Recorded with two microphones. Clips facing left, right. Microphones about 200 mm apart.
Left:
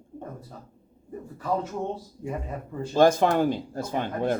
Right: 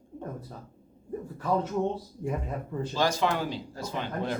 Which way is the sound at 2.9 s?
50° left (ahead or behind).